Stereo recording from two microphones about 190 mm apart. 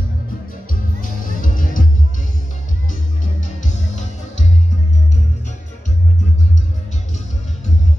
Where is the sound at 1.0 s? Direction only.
45° left (ahead or behind).